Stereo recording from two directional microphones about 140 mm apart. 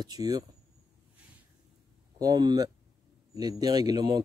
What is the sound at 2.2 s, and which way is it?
Speech, 30° right (ahead or behind).